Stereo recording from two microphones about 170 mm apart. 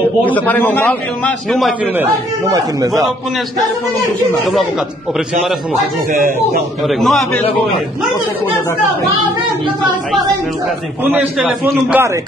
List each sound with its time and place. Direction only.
0.3 s a man's voice: 10° left (ahead or behind)
2.5 s a man's voice: 20° right (ahead or behind)
6.1 s speech: 55° right (ahead or behind)
6.9 s a man's voice: centre (ahead or behind)
11.1 s a man's voice: 5° right (ahead or behind)